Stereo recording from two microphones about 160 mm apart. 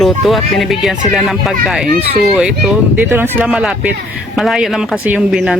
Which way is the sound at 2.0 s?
45° right (ahead or behind).